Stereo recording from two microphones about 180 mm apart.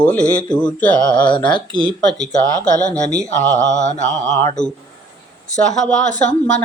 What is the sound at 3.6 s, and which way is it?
Speech, 45° left (ahead or behind).